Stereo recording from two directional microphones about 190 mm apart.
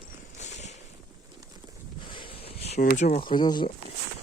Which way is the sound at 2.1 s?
30° left (ahead or behind).